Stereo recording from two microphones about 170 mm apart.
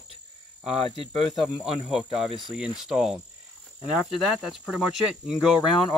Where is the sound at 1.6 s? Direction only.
5° right (ahead or behind).